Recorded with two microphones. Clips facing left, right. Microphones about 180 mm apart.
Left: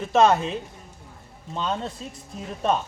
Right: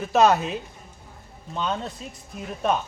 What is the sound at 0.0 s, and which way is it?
Speech, 5° right (ahead or behind).